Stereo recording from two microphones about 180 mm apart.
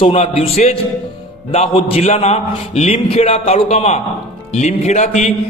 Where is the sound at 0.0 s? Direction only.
30° left (ahead or behind).